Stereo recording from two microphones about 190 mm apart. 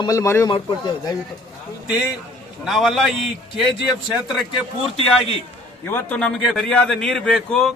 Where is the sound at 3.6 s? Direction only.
20° left (ahead or behind).